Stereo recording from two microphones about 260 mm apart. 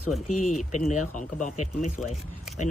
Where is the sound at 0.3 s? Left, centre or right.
Left.